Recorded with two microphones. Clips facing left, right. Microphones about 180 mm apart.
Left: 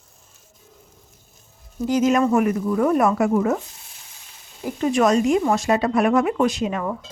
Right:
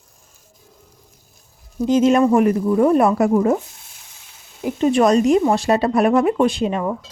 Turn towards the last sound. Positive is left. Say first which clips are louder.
# right 3 dB
turn(degrees=-30)  # may be behind; listen again after turning